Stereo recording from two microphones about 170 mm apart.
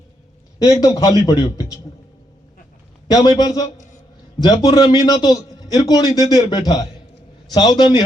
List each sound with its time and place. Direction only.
0.6 s a man's voice: 20° left (ahead or behind)
3.1 s a man's voice: 20° left (ahead or behind)